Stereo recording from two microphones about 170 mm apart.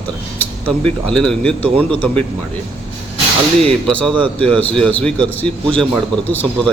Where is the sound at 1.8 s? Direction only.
30° right (ahead or behind).